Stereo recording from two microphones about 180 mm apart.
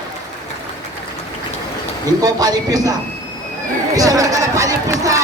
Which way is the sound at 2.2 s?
20° right (ahead or behind).